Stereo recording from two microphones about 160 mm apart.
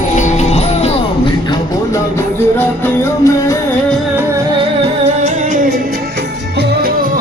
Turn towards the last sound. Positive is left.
turn(degrees=-50)  # may be behind; listen again after turning